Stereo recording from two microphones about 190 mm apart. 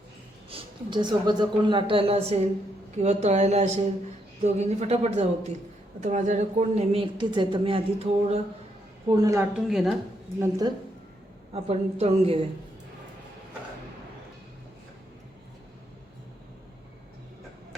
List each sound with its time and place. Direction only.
0.5 s a woman's voice: 25° right (ahead or behind)
9.0 s a woman's voice: 20° right (ahead or behind)
9.6 s a woman's voice: centre (ahead or behind)
11.5 s a woman's voice: 35° right (ahead or behind)